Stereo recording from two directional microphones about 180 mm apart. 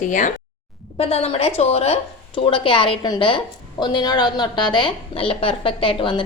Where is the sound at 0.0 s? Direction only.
45° left (ahead or behind).